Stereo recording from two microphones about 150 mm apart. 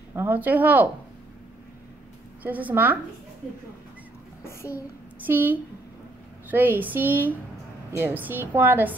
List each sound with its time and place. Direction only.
0.1 s a woman's voice: 15° right (ahead or behind)
2.4 s a woman's voice: 10° right (ahead or behind)
4.5 s a child's voice: 20° left (ahead or behind)
4.7 s a sound: 15° right (ahead or behind)
6.5 s a woman's voice: 10° right (ahead or behind)